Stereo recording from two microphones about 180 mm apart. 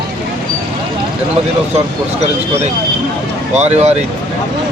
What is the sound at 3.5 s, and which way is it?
Speech, 35° right (ahead or behind).